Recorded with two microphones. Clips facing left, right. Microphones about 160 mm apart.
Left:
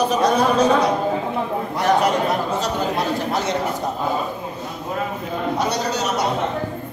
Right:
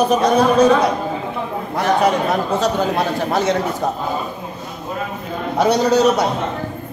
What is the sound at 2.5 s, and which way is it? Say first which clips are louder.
Speech: right 4 dB; 55° right (ahead or behind).